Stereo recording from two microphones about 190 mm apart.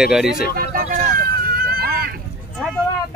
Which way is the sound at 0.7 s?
45° right (ahead or behind).